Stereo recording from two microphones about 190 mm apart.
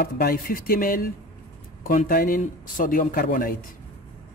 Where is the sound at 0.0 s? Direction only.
50° left (ahead or behind).